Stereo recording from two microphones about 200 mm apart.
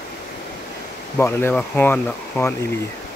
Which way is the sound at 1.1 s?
10° left (ahead or behind).